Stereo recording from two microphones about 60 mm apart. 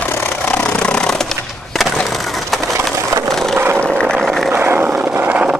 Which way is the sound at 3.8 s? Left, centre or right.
Centre.